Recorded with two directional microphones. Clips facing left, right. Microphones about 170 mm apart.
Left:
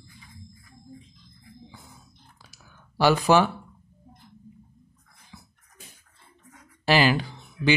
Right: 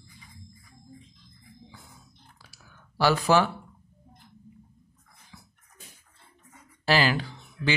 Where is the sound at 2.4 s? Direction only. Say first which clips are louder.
Left 1 dB; 20° left (ahead or behind).